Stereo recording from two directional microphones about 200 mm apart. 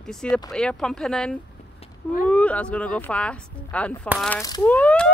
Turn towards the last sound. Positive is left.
turn(degrees=5)  # may be behind; listen again after turning